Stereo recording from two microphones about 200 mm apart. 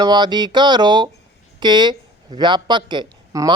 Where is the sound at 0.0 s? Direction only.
20° right (ahead or behind).